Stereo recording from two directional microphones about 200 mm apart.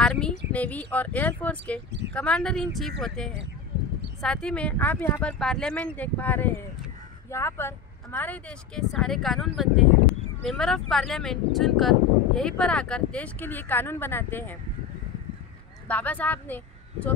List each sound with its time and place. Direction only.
0.0 s speech: 5° left (ahead or behind)
1.9 s speech: 60° right (ahead or behind)
2.1 s speech: 5° left (ahead or behind)
15.9 s a woman's voice: 5° left (ahead or behind)